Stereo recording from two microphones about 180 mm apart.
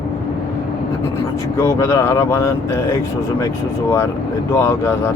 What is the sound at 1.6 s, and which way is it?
Speech, 15° left (ahead or behind).